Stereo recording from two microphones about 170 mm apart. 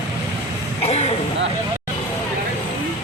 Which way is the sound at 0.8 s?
40° left (ahead or behind).